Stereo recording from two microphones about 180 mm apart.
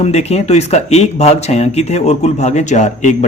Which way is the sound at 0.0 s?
35° left (ahead or behind).